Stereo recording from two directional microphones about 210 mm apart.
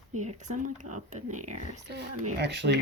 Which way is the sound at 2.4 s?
55° right (ahead or behind).